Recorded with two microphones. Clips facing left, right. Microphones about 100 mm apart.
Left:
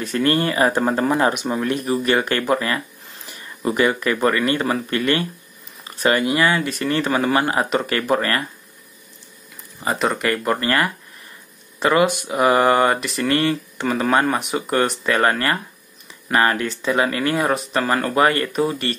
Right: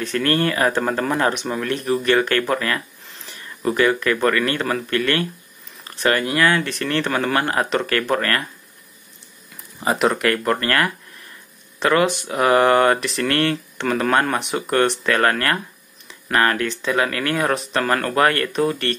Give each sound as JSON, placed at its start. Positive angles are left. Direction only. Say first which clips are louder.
{"t": 0.0, "sound": "speech", "louder": "left 1 dB", "side_deg": 15}
{"t": 9.8, "sound": "speech", "louder": "right 2 dB", "side_deg": -5}
{"t": 10.3, "sound": "speech", "louder": "even", "side_deg": 10}